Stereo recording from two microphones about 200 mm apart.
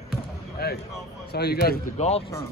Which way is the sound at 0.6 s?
50° left (ahead or behind).